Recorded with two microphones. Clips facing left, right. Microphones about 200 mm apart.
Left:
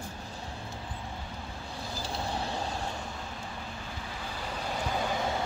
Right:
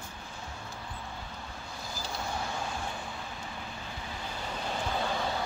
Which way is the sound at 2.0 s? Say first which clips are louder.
Left 2 dB; 30° left (ahead or behind).